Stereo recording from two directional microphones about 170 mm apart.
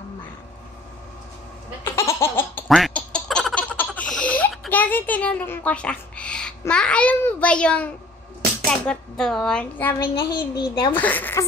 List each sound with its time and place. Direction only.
2.0 s laughter: 15° left (ahead or behind)
2.7 s quack: 5° left (ahead or behind)
6.7 s a child's voice: 5° left (ahead or behind)
10.3 s speech: 25° left (ahead or behind)
10.9 s a child's voice: 10° left (ahead or behind)